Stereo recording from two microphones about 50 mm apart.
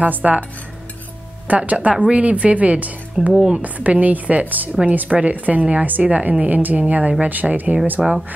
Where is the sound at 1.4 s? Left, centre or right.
Right.